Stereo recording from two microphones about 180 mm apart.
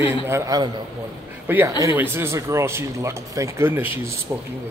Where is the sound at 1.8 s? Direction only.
15° right (ahead or behind).